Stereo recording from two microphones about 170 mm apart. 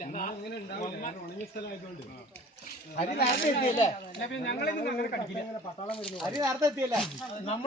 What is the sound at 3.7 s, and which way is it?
Speech, 40° left (ahead or behind).